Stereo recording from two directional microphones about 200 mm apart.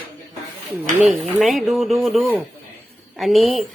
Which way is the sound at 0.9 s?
Centre (ahead or behind).